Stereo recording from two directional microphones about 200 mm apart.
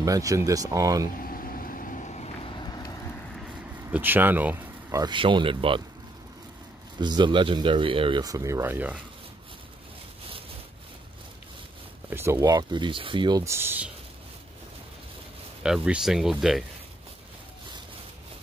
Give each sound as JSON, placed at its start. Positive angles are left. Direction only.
{"t": 0.0, "sound": "speech", "side_deg": -15}
{"t": 1.2, "sound": "vehicle", "side_deg": 45}
{"t": 3.9, "sound": "speech", "side_deg": -10}
{"t": 7.0, "sound": "speech", "side_deg": -20}
{"t": 12.1, "sound": "speech", "side_deg": -10}
{"t": 15.6, "sound": "speech", "side_deg": -5}